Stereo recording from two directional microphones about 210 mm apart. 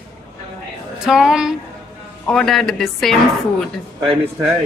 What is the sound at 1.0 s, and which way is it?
A woman's voice, 5° right (ahead or behind).